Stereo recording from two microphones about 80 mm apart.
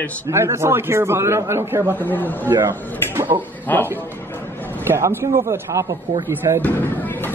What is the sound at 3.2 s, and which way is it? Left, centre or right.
Speech, right.